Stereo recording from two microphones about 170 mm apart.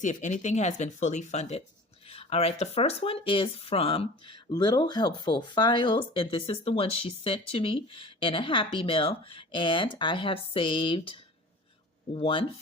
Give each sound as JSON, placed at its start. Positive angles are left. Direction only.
{"t": 0.0, "sound": "speech", "side_deg": 45}